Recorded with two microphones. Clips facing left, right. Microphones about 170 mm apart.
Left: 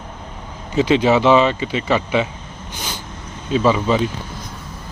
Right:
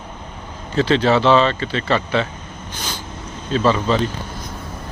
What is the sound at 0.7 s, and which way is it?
Speech, 15° left (ahead or behind).